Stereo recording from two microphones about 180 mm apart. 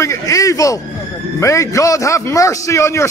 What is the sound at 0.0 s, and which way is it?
A man's voice, 15° left (ahead or behind).